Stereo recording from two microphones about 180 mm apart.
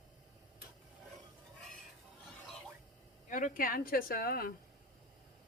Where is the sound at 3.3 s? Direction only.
45° left (ahead or behind).